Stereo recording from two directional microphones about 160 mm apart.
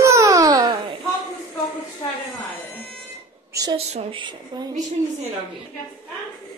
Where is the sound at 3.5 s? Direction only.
25° right (ahead or behind).